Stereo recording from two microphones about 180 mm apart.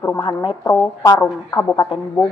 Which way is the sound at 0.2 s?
25° left (ahead or behind).